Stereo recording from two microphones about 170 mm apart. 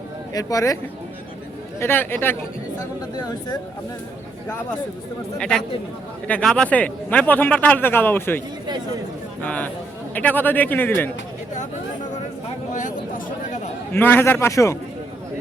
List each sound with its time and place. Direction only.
0.3 s speech: 20° left (ahead or behind)
1.8 s a man's voice: 10° left (ahead or behind)
3.2 s speech: 25° left (ahead or behind)
5.4 s a man's voice: 5° left (ahead or behind)
9.4 s a man's voice: 10° left (ahead or behind)
12.7 s a sound: 50° left (ahead or behind)
13.9 s a man's voice: 10° left (ahead or behind)